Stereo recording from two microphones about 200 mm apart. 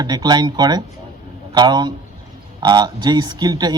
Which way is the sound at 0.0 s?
20° right (ahead or behind).